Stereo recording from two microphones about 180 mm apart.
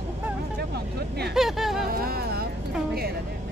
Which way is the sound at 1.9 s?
55° right (ahead or behind).